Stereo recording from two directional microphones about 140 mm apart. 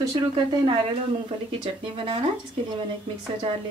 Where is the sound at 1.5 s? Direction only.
40° right (ahead or behind).